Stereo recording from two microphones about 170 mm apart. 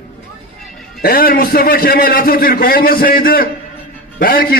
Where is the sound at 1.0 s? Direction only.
60° left (ahead or behind).